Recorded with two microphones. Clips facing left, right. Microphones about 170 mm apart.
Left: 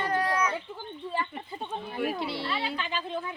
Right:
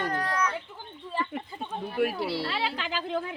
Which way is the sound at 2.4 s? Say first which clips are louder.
Right 1 dB; 80° right.